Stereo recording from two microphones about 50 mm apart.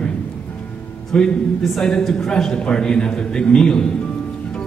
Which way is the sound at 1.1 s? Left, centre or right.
Centre.